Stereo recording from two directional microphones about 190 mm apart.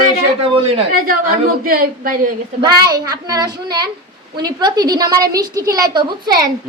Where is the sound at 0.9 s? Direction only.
50° right (ahead or behind).